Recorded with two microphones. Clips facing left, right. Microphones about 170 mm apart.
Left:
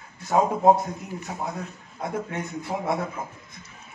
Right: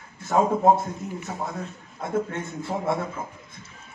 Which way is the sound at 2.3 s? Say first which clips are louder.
Even; 25° right (ahead or behind).